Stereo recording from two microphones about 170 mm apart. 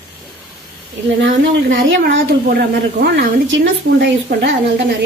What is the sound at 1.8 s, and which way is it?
A woman's voice, 90° right.